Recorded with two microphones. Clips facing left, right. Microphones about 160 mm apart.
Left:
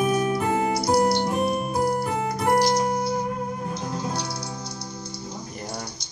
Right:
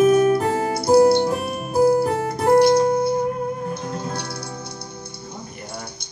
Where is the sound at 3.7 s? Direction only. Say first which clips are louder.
Right 1 dB; 55° right (ahead or behind).